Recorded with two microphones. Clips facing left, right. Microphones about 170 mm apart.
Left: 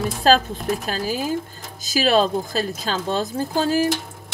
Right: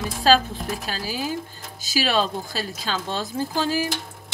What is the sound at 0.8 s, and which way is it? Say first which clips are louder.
A woman's voice: left 4 dB; 45° left (ahead or behind).